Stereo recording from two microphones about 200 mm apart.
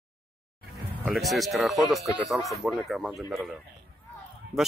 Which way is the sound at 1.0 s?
Centre (ahead or behind).